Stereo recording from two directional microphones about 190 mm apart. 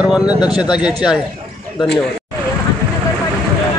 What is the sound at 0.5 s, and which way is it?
Speech, 25° left (ahead or behind).